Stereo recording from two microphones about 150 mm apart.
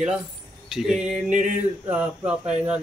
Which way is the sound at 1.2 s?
50° right (ahead or behind).